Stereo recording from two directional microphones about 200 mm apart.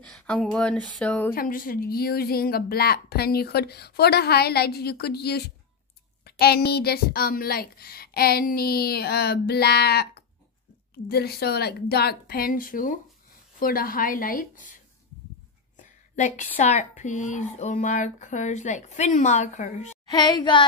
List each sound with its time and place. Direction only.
0.0 s speech: 5° left (ahead or behind)
1.3 s a woman's voice: 45° left (ahead or behind)
20.1 s child singing: 20° left (ahead or behind)